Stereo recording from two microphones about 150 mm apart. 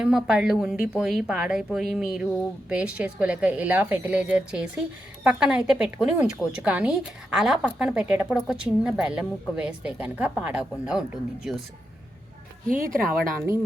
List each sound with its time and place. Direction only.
0.0 s a woman's voice: 5° right (ahead or behind)
12.8 s speech: 70° right (ahead or behind)